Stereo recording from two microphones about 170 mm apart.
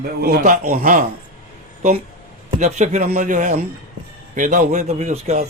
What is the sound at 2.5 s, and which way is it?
A man's voice, 45° right (ahead or behind).